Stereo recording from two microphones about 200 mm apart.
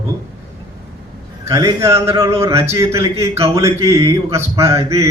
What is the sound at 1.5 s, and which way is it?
A man's voice, 15° right (ahead or behind).